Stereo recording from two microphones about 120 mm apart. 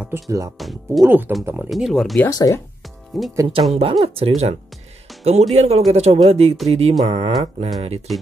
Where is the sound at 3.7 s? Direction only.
55° right (ahead or behind).